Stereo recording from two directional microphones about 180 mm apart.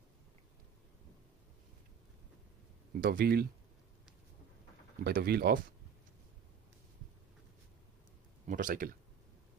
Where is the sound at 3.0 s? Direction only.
55° right (ahead or behind).